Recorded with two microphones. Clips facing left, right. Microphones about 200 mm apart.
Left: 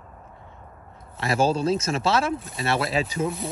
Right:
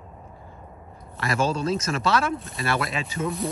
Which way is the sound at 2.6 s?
25° left (ahead or behind).